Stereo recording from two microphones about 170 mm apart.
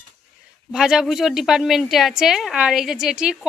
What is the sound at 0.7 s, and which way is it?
A woman's voice, 5° right (ahead or behind).